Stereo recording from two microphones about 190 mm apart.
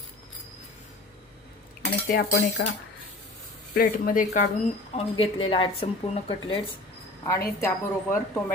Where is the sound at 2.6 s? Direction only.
65° left (ahead or behind).